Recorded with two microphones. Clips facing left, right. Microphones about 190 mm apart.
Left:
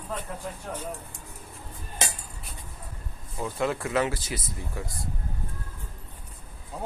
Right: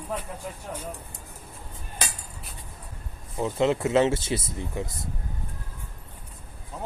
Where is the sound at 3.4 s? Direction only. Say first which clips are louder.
Right 5 dB; 25° right (ahead or behind).